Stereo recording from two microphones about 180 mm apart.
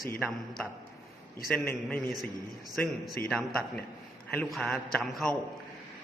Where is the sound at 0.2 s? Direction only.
5° left (ahead or behind).